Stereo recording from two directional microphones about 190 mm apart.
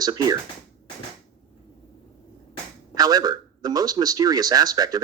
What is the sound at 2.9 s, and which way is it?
A man's voice, 20° right (ahead or behind).